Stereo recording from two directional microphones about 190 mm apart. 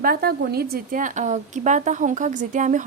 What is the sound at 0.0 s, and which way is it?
A woman's voice, 50° right (ahead or behind).